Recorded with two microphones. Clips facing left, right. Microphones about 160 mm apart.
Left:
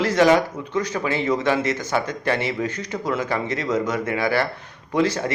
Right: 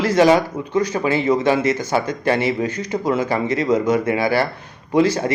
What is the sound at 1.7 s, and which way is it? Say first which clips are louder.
Speech: right 4 dB; 35° right (ahead or behind).